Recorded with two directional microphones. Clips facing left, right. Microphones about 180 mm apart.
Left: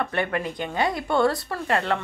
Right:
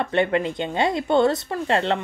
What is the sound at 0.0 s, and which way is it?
A woman's voice, 25° right (ahead or behind).